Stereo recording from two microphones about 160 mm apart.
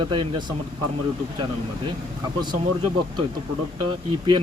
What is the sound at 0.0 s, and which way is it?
Speech, 30° right (ahead or behind).